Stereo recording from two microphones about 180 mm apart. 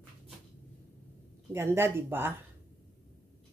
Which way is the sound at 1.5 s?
15° right (ahead or behind).